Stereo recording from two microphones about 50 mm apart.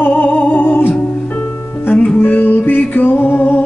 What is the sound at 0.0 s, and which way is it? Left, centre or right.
Music, left.